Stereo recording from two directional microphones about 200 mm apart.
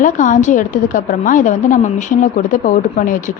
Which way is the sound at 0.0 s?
40° left (ahead or behind).